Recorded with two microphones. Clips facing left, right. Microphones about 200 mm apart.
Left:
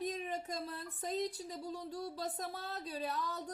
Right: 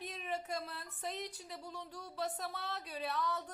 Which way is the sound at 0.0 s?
35° left (ahead or behind).